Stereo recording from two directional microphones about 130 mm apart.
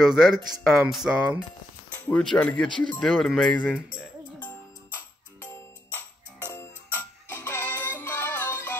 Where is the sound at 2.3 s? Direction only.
10° left (ahead or behind).